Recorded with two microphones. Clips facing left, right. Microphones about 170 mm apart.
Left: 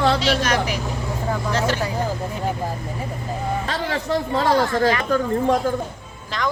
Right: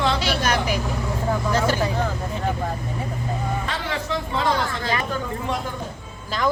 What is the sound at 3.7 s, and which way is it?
Speech, 40° left (ahead or behind).